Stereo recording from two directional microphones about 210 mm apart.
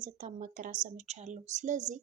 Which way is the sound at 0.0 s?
35° right (ahead or behind).